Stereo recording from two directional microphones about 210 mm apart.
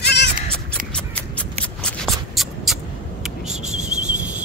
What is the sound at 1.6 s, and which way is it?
Shuffling cards, 5° left (ahead or behind).